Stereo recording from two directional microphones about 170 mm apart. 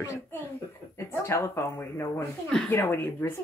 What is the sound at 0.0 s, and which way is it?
Speech, 15° left (ahead or behind).